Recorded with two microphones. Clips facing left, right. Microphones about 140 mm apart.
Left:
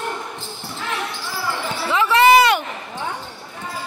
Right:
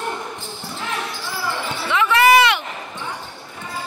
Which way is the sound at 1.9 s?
30° left (ahead or behind).